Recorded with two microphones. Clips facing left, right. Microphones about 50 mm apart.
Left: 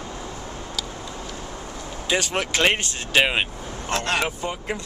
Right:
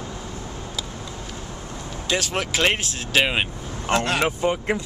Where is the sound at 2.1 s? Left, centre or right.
Centre.